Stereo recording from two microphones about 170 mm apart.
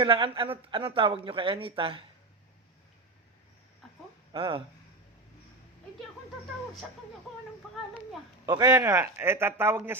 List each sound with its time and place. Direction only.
0.0 s speech: 30° right (ahead or behind)
4.3 s speech: 30° right (ahead or behind)
8.4 s a man's voice: 25° right (ahead or behind)